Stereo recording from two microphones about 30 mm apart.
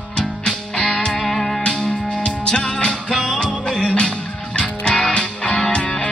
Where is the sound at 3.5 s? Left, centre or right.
Left.